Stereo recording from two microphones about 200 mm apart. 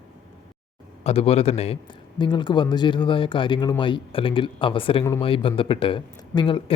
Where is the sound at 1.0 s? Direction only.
30° left (ahead or behind).